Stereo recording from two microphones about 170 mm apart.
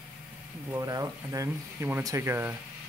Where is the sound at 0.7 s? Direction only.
20° right (ahead or behind).